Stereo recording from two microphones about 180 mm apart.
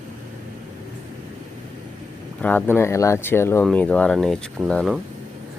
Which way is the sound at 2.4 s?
10° left (ahead or behind).